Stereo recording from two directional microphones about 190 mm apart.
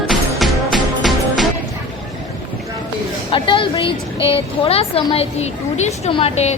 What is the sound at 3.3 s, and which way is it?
A woman's voice, 25° left (ahead or behind).